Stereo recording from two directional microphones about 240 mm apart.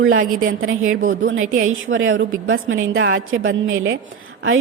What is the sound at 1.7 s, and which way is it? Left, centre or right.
A woman's voice, right.